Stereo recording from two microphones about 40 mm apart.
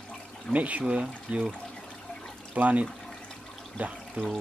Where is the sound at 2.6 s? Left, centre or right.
Right.